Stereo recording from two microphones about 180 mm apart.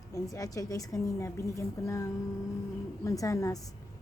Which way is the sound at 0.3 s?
20° left (ahead or behind).